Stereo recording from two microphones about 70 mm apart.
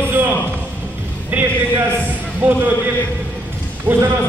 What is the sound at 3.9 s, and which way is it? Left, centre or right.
Speech, right.